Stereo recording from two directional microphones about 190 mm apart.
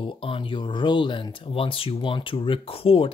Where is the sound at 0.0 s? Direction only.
25° left (ahead or behind).